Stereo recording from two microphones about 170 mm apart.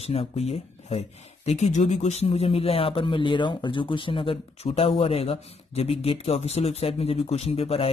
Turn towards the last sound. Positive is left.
turn(degrees=35)  # may be behind; listen again after turning